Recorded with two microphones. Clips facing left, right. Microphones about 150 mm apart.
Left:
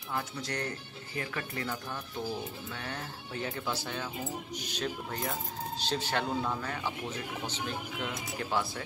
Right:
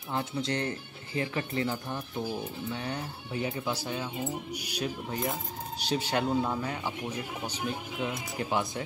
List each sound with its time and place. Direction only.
0.1 s a man's voice: 25° right (ahead or behind)